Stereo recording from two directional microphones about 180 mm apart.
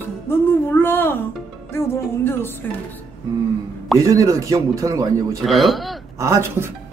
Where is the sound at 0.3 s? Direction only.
10° left (ahead or behind).